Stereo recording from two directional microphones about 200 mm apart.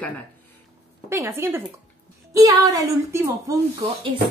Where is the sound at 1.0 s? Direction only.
15° right (ahead or behind).